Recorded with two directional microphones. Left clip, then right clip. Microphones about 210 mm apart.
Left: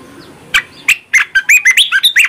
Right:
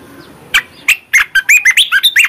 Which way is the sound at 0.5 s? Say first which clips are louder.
Even; 20° right (ahead or behind).